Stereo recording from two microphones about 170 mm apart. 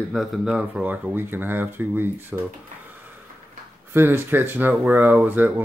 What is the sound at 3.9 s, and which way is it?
Speech, 15° right (ahead or behind).